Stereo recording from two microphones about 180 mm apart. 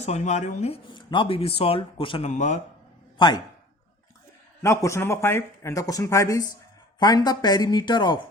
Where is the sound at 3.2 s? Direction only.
25° left (ahead or behind).